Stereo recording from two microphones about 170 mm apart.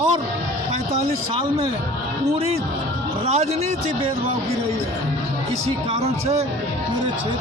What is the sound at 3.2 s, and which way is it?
Speech, 35° right (ahead or behind).